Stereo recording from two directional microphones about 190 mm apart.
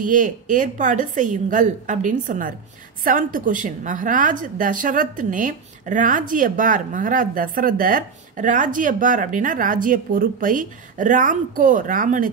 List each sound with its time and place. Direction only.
0.0 s a woman's voice: 45° right (ahead or behind)